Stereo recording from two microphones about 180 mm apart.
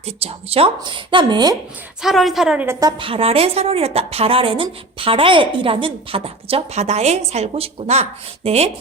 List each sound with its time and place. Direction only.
0.0 s a woman's voice: 35° right (ahead or behind)
2.0 s a woman's voice: centre (ahead or behind)
3.0 s a woman's voice: 30° right (ahead or behind)